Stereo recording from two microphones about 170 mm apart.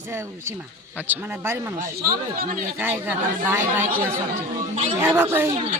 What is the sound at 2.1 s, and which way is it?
Speech, 60° right (ahead or behind).